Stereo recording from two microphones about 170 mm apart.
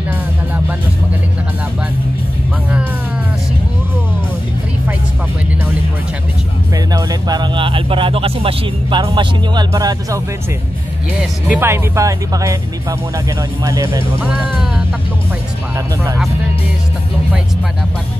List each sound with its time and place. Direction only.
6.9 s speech: 20° right (ahead or behind)
11.1 s speech: 10° right (ahead or behind)
13.7 s speech: 20° right (ahead or behind)